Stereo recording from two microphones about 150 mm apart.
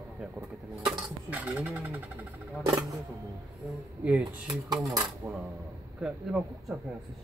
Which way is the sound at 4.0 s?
10° right (ahead or behind).